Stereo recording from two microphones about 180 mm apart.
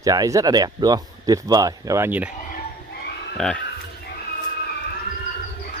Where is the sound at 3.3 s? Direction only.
5° left (ahead or behind).